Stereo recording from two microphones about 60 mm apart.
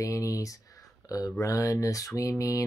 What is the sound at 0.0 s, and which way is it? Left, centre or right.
Speech, left.